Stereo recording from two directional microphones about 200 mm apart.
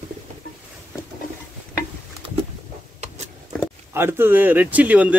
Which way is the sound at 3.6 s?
10° right (ahead or behind).